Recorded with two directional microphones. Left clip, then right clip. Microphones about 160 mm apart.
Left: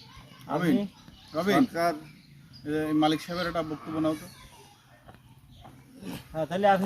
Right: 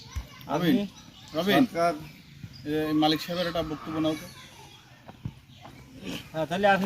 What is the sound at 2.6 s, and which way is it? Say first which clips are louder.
Speech: right 1 dB; 15° right (ahead or behind).